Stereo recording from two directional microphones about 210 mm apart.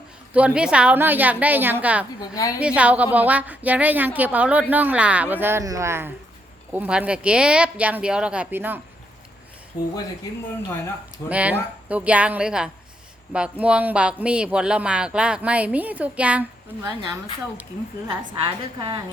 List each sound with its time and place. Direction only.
0.3 s a woman's voice: 5° right (ahead or behind)
2.2 s a woman's voice: 15° left (ahead or behind)
2.6 s a woman's voice: 5° right (ahead or behind)
9.7 s speech: 20° left (ahead or behind)
11.3 s a woman's voice: 5° right (ahead or behind)
18.1 s a woman's voice: 25° right (ahead or behind)